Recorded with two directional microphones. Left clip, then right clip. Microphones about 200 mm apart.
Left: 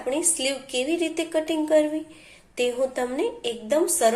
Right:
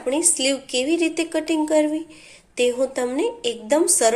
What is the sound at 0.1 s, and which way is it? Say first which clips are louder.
A woman's voice: right 4 dB; 20° right (ahead or behind).